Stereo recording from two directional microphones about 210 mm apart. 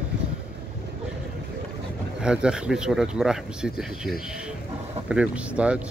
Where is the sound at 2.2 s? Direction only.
5° right (ahead or behind).